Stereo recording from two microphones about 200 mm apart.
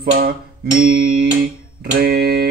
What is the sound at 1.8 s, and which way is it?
Guitar, 50° right (ahead or behind).